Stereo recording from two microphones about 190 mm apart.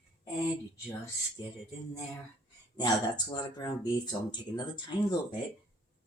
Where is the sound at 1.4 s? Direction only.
25° left (ahead or behind).